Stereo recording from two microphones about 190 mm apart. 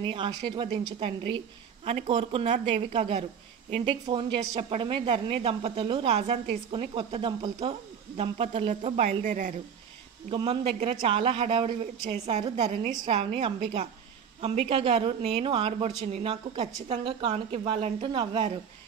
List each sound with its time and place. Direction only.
0.0 s a woman's voice: 25° right (ahead or behind); by 9.6 s 45° right (ahead or behind)
10.3 s a woman's voice: 30° right (ahead or behind)
12.9 s a woman's voice: 25° right (ahead or behind)